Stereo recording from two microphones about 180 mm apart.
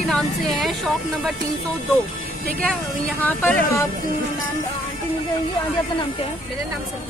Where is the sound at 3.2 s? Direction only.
10° left (ahead or behind).